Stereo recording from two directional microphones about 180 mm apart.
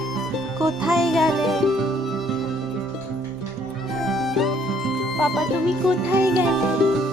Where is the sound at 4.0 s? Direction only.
Centre (ahead or behind).